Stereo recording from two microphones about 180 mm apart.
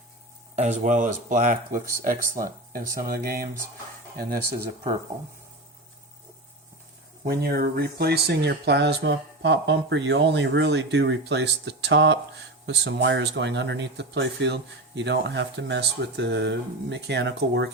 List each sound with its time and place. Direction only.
0.5 s speech: 40° right (ahead or behind)
7.3 s speech: 60° right (ahead or behind)